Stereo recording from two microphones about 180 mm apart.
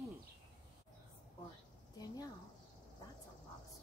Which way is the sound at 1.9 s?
20° left (ahead or behind).